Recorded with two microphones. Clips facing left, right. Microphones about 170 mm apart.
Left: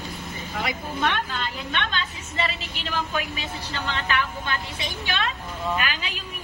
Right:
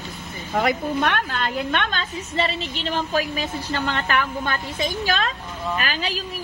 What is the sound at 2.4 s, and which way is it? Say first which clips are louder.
Speech: right 4 dB; 30° right (ahead or behind).